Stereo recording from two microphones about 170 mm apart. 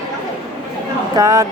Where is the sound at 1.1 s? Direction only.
20° right (ahead or behind).